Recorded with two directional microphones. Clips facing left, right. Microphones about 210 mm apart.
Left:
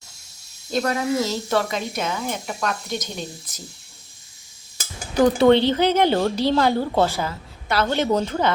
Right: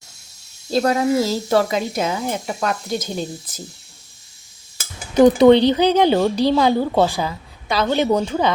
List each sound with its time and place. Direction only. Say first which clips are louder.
0.7 s a woman's voice: right 5 dB; 30° right (ahead or behind)
5.1 s speech: right 4 dB; 20° right (ahead or behind)